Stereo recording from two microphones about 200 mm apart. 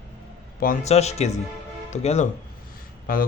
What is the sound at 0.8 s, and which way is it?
Speech, 35° left (ahead or behind).